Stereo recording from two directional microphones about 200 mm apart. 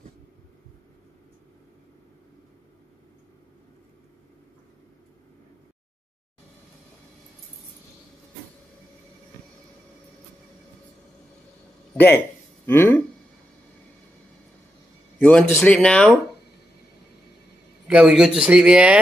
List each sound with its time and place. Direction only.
11.9 s a sound: 10° left (ahead or behind)
12.6 s speech: 10° left (ahead or behind)
15.1 s a man's voice: 5° left (ahead or behind)
17.8 s a man's voice: 5° right (ahead or behind)